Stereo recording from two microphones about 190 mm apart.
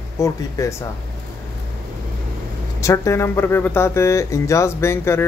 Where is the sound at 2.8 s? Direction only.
15° left (ahead or behind).